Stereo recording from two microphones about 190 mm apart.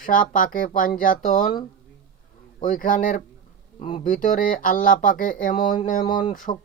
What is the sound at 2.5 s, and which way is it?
Speech, 45° left (ahead or behind).